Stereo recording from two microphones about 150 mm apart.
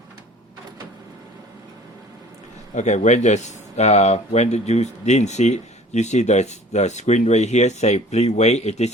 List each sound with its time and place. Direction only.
2.7 s speech: 50° left (ahead or behind)